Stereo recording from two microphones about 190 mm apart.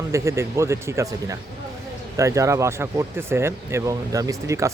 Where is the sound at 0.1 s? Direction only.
15° right (ahead or behind).